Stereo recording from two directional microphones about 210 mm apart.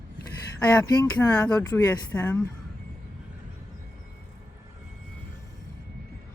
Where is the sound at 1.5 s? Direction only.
15° left (ahead or behind).